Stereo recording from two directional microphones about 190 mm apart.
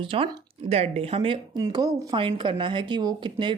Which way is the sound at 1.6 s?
20° right (ahead or behind).